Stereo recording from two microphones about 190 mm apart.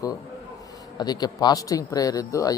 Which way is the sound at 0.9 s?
20° left (ahead or behind).